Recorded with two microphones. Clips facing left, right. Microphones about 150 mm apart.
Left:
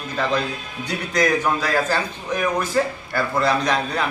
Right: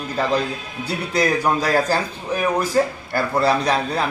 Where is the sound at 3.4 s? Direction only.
35° right (ahead or behind).